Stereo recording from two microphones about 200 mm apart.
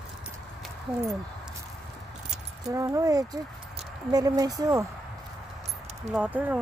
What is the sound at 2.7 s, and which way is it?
Speech, 15° right (ahead or behind).